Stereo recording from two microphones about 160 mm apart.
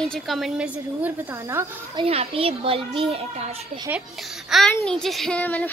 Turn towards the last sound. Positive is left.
turn(degrees=10)  # may be behind; listen again after turning